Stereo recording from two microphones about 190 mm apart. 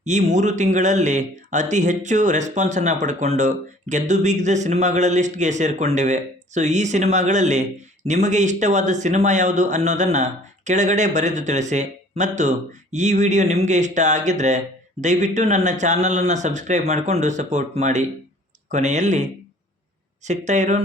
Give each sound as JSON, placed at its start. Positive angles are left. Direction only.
{"t": 0.0, "sound": "speech", "side_deg": -40}